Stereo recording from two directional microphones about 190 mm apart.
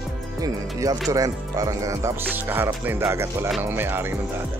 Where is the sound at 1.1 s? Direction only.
15° right (ahead or behind).